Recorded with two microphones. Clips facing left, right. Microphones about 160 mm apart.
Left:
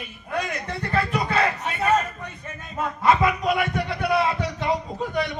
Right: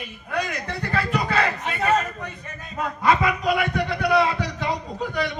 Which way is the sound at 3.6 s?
25° left (ahead or behind).